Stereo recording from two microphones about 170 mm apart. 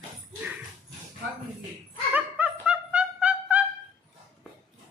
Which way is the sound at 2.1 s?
10° right (ahead or behind).